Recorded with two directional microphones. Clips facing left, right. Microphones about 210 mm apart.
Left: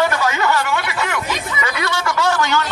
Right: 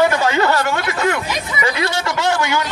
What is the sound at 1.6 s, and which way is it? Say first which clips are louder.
Speech: right 3 dB; 30° right (ahead or behind).